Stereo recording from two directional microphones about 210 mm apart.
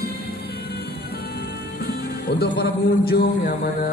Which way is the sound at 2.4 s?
50° left (ahead or behind).